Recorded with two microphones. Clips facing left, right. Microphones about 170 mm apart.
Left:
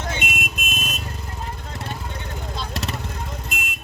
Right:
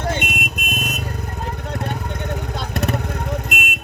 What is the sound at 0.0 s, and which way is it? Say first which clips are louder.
Vehicle: right 5 dB; 55° right (ahead or behind).